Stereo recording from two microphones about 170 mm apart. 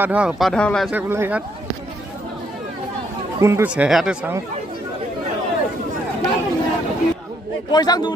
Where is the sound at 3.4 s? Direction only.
15° right (ahead or behind).